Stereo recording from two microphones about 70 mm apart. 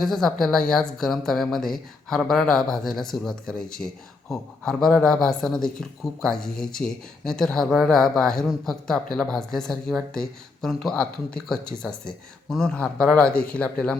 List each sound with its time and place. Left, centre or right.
0.0 s speech: centre